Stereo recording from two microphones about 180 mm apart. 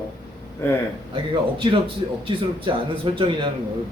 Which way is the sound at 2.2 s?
30° right (ahead or behind).